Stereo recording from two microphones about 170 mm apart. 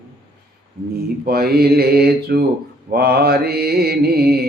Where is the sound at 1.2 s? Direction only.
65° right (ahead or behind).